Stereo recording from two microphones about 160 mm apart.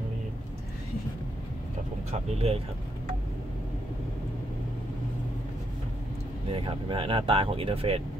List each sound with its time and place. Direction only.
2.0 s speech: 40° right (ahead or behind)
6.5 s speech: 35° right (ahead or behind)